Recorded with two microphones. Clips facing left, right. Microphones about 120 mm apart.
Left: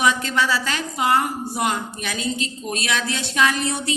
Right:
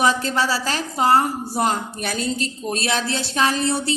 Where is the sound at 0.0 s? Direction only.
35° right (ahead or behind).